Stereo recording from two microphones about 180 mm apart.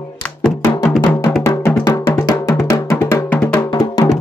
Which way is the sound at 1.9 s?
25° left (ahead or behind).